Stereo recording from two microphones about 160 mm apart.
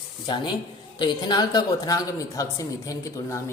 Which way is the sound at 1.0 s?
25° left (ahead or behind).